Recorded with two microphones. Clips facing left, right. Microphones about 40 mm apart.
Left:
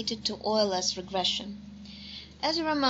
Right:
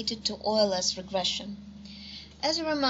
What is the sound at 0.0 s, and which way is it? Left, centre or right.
A woman's voice, centre.